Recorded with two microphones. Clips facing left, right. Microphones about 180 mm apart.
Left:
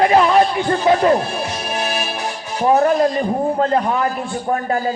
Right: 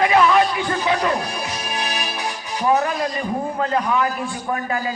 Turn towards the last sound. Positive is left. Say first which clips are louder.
# left 3 dB
turn(degrees=40)  # may be behind; listen again after turning